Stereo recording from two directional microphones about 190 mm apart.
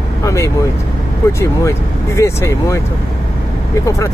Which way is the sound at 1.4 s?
15° left (ahead or behind).